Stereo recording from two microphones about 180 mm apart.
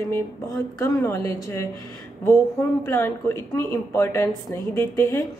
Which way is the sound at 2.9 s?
15° left (ahead or behind).